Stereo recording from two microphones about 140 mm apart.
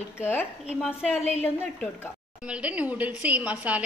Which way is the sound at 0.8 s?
5° right (ahead or behind).